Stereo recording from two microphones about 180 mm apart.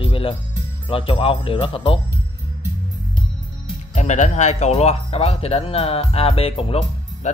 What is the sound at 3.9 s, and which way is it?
Speech, 40° left (ahead or behind).